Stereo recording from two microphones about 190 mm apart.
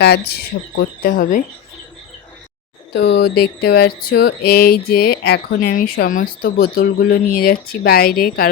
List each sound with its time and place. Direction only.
0.0 s speech: 55° left (ahead or behind)
2.9 s speech: 60° left (ahead or behind)